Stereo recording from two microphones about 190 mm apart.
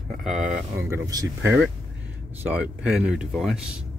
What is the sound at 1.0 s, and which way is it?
Speech, 15° right (ahead or behind).